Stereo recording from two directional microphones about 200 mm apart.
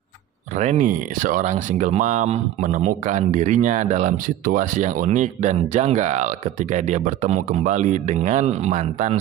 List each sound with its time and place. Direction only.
0.6 s speech: 40° right (ahead or behind)